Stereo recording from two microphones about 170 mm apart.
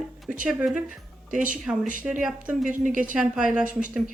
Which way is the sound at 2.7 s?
50° right (ahead or behind).